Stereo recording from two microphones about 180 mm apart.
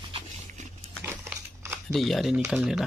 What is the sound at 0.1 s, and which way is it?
Dog, 40° right (ahead or behind).